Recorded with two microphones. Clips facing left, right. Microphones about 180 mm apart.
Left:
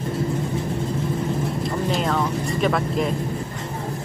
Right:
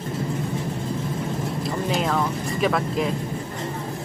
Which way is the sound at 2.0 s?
Centre (ahead or behind).